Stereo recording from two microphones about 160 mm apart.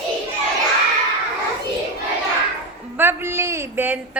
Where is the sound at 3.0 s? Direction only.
15° right (ahead or behind).